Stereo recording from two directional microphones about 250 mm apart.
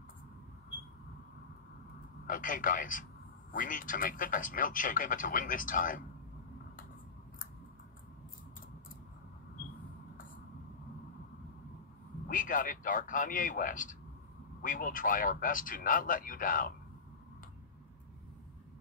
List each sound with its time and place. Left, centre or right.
2.2 s speech: left
12.3 s speech: left